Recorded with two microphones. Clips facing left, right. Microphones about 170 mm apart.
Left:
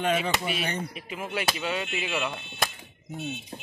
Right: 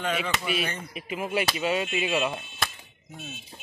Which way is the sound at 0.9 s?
10° right (ahead or behind).